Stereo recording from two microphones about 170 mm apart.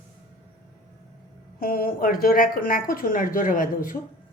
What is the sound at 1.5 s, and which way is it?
A woman's voice, 60° left (ahead or behind).